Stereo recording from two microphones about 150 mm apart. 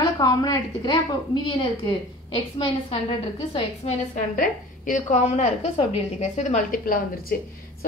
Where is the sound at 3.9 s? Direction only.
60° left (ahead or behind).